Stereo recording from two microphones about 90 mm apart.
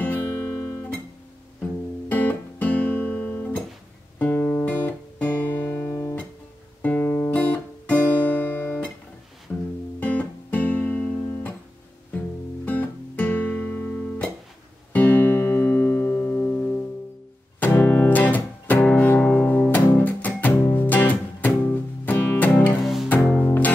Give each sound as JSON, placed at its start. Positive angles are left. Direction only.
{"t": 2.0, "sound": "guitar", "side_deg": 20}
{"t": 9.5, "sound": "music", "side_deg": 20}
{"t": 9.9, "sound": "guitar", "side_deg": 15}
{"t": 12.6, "sound": "guitar", "side_deg": 20}
{"t": 14.9, "sound": "music", "side_deg": 20}